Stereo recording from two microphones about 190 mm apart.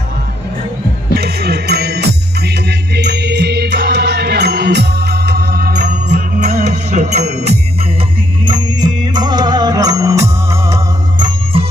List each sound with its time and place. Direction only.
1.1 s music: 55° right (ahead or behind)
6.0 s music: 40° right (ahead or behind)
8.5 s music: 25° right (ahead or behind)